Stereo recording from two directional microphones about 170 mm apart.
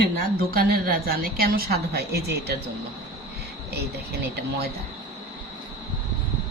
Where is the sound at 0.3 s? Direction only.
60° right (ahead or behind).